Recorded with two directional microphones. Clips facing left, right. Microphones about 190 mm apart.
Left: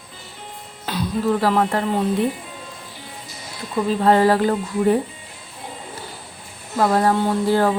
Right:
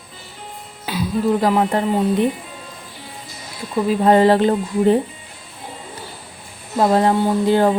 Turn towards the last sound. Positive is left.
turn(degrees=-20)  # may be behind; listen again after turning